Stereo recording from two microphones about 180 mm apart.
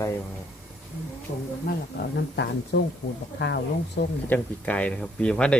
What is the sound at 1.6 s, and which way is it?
Speech, 65° left (ahead or behind).